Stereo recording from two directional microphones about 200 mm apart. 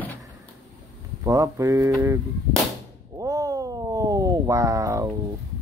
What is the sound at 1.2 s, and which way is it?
Speech, 15° right (ahead or behind).